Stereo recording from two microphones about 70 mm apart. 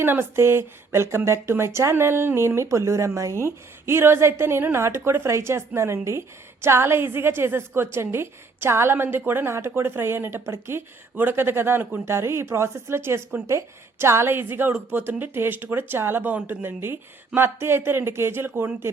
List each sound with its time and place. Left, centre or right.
0.0 s a woman's voice: right
16.8 s a woman's voice: right